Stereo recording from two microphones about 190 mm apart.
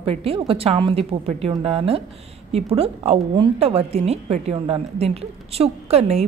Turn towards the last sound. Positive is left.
turn(degrees=-35)  # may be behind; listen again after turning